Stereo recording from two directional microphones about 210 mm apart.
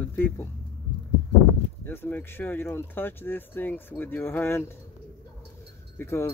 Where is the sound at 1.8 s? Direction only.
10° left (ahead or behind).